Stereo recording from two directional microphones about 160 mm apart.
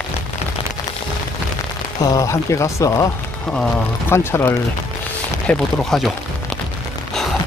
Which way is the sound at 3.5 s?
10° left (ahead or behind).